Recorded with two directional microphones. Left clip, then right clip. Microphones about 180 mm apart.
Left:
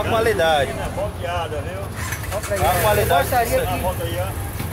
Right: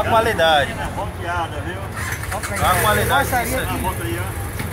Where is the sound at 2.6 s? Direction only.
15° left (ahead or behind).